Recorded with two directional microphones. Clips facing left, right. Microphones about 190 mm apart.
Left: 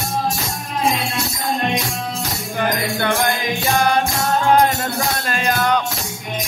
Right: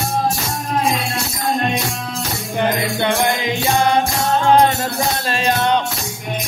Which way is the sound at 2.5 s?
20° right (ahead or behind).